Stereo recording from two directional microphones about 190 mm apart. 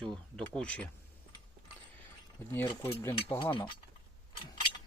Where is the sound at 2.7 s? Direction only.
25° left (ahead or behind).